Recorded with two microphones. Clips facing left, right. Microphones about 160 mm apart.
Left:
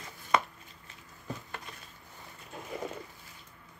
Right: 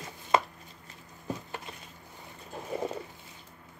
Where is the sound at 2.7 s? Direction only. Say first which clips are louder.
Right 5 dB; 30° right (ahead or behind).